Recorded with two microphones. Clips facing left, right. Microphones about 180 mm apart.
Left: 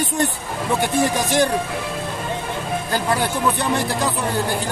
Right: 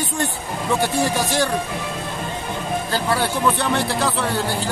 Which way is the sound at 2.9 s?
15° left (ahead or behind).